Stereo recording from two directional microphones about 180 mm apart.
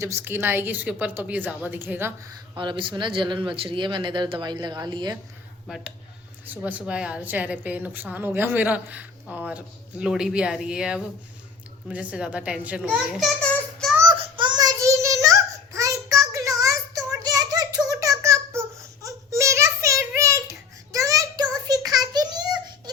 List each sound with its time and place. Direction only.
0.0 s a woman's voice: 15° right (ahead or behind)
5.6 s a woman's voice: centre (ahead or behind)
14.0 s child singing: 25° right (ahead or behind)
17.2 s a sound: 20° right (ahead or behind)